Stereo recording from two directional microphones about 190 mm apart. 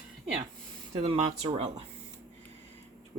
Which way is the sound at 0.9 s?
30° right (ahead or behind).